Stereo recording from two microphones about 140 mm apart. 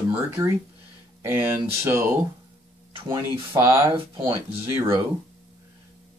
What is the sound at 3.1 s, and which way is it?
Speech, 20° right (ahead or behind).